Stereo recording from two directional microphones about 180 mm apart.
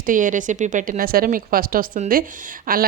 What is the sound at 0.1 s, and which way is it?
A woman's voice, 45° right (ahead or behind).